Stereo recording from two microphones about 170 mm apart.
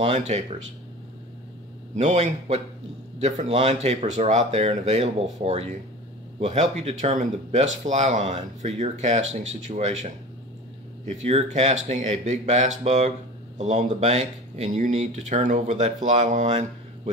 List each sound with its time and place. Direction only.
0.0 s speech: 40° right (ahead or behind)
2.0 s speech: 40° right (ahead or behind)